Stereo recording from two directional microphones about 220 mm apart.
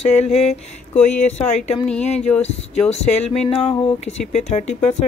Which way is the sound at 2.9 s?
30° left (ahead or behind).